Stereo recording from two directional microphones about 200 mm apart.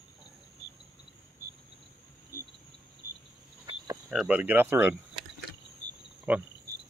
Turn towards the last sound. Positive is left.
turn(degrees=-5)  # may be behind; listen again after turning